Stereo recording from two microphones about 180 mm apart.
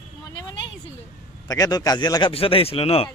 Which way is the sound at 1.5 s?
20° left (ahead or behind).